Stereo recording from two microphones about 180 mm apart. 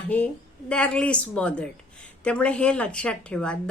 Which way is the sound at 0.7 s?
5° left (ahead or behind).